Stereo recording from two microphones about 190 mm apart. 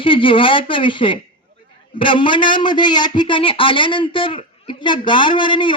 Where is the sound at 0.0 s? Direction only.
25° left (ahead or behind).